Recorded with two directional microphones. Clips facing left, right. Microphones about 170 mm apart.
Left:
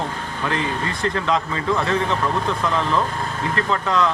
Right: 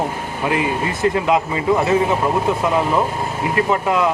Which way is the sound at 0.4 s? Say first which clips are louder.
Right 4 dB; 15° right (ahead or behind).